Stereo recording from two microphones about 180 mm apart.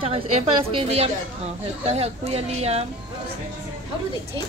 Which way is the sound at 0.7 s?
35° right (ahead or behind).